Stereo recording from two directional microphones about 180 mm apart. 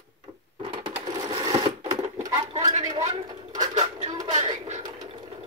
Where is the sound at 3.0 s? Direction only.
40° right (ahead or behind).